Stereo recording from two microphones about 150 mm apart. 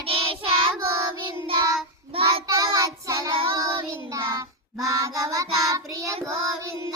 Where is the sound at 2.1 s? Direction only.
40° right (ahead or behind).